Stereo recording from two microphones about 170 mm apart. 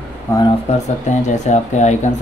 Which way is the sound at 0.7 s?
40° left (ahead or behind).